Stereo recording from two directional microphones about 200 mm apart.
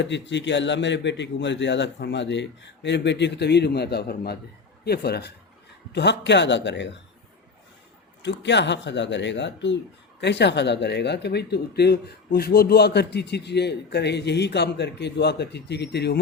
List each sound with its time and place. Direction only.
0.0 s a man's voice: 60° left (ahead or behind)
8.2 s speech: 60° left (ahead or behind)